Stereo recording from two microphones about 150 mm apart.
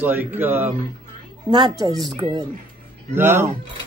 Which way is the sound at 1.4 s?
30° right (ahead or behind).